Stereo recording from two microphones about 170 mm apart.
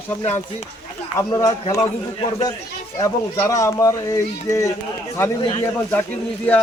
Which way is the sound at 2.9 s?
20° left (ahead or behind).